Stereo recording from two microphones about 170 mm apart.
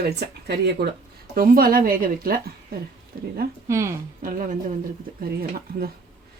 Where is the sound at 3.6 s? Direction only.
15° right (ahead or behind).